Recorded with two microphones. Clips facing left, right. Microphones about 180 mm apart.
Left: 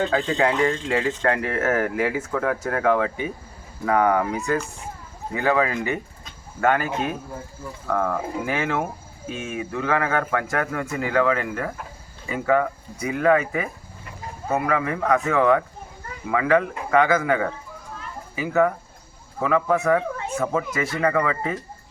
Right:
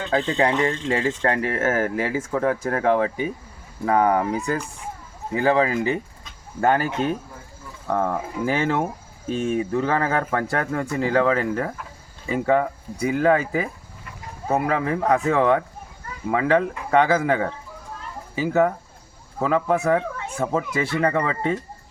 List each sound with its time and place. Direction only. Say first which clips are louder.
0.1 s a man's voice: right 1 dB; 30° right (ahead or behind)
14.7 s speech: even; 30° right (ahead or behind)